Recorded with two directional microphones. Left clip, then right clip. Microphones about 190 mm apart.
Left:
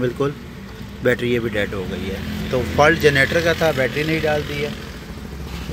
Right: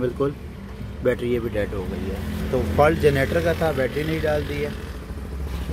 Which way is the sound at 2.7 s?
Centre (ahead or behind).